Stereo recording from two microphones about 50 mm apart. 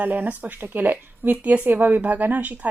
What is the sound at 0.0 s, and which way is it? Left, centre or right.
Speech, right.